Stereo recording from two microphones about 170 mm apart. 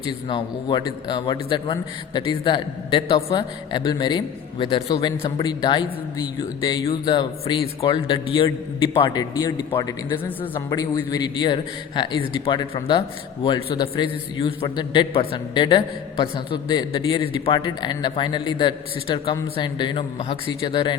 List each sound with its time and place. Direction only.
0.3 s a man's voice: 30° left (ahead or behind)